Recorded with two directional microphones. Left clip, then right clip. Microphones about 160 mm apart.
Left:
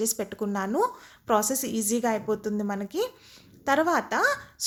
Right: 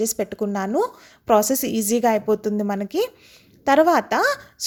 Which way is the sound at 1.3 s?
45° right (ahead or behind).